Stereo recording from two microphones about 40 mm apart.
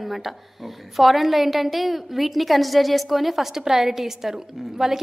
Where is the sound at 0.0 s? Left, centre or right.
Centre.